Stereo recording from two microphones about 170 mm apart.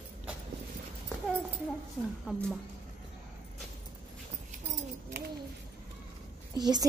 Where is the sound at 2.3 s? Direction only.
5° left (ahead or behind).